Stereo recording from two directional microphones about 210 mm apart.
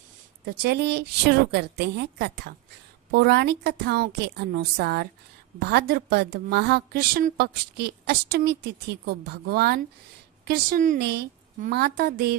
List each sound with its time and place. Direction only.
0.4 s a woman's voice: 50° right (ahead or behind)